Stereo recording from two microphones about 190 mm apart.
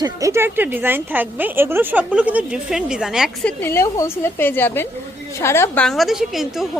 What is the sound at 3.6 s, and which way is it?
A woman's voice, 15° left (ahead or behind).